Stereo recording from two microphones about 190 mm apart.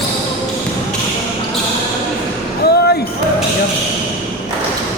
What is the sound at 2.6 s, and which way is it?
Basketball bounce, 55° left (ahead or behind).